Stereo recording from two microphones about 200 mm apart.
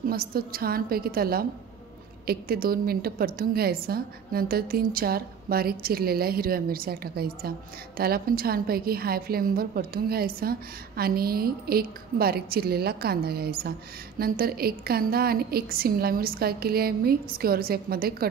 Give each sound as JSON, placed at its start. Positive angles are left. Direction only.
{"t": 0.1, "sound": "a woman's voice", "side_deg": -50}